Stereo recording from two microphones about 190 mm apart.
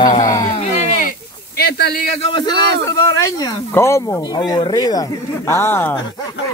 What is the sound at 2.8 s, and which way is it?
Speech, 15° left (ahead or behind).